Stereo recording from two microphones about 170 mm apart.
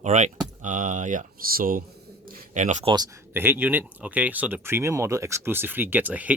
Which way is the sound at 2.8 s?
25° right (ahead or behind).